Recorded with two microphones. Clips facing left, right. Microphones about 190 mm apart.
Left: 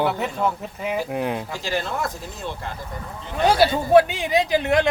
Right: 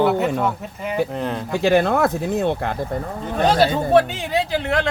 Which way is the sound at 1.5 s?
60° right (ahead or behind).